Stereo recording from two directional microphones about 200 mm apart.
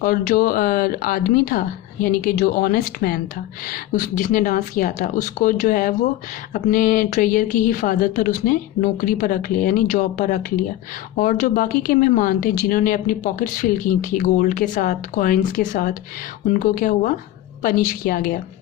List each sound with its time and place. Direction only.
0.0 s speech: 45° left (ahead or behind)